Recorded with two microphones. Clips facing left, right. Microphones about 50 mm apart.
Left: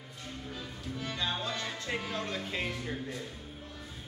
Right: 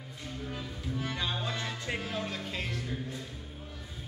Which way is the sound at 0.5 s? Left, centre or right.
Centre.